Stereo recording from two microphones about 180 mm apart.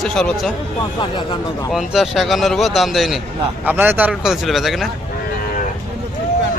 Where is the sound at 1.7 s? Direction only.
Centre (ahead or behind).